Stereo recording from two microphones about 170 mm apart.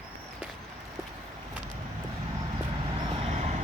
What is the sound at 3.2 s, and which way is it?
Vehicle, 40° right (ahead or behind).